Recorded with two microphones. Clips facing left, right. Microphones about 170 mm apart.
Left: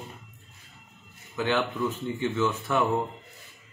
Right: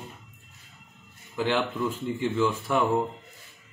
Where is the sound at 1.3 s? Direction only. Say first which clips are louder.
Even; 5° right (ahead or behind).